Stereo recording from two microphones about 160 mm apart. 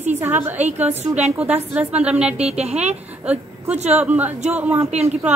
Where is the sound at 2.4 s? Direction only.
40° right (ahead or behind).